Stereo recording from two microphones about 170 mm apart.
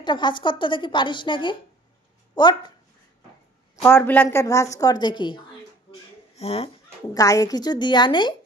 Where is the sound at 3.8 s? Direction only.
10° left (ahead or behind); by 5.4 s 30° left (ahead or behind).